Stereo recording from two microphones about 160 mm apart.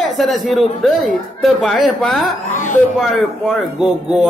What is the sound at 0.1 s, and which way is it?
A man's voice, centre (ahead or behind).